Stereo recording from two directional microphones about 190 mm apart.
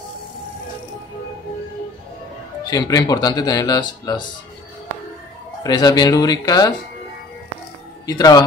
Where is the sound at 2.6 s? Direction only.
20° left (ahead or behind).